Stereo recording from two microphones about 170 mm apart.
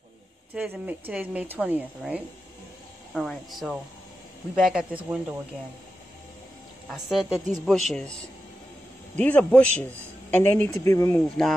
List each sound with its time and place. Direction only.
0.6 s a woman's voice: 10° right (ahead or behind)
6.9 s speech: centre (ahead or behind)
9.1 s speech: 10° left (ahead or behind)